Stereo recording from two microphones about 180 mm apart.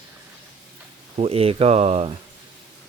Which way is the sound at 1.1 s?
35° right (ahead or behind).